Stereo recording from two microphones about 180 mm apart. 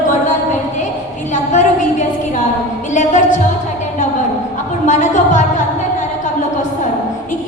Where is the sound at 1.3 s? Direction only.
45° left (ahead or behind).